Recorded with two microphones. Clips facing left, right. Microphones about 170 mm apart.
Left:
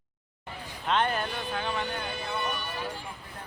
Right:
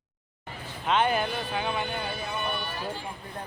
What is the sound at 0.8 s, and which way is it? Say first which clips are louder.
Speech: right 3 dB; 5° right (ahead or behind).